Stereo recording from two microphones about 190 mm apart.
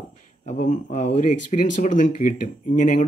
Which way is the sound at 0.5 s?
40° left (ahead or behind).